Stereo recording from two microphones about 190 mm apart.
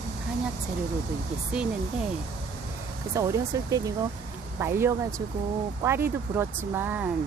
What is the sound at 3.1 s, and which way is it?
Speech, 15° right (ahead or behind).